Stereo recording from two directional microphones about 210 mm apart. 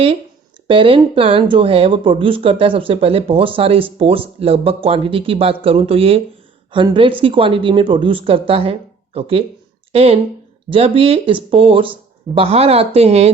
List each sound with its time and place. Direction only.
0.7 s speech: 25° right (ahead or behind)